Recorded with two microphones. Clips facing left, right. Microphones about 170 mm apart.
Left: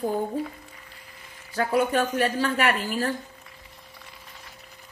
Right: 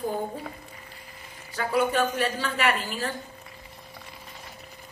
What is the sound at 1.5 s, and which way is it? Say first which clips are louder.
A woman's voice: left 2 dB; 50° left (ahead or behind).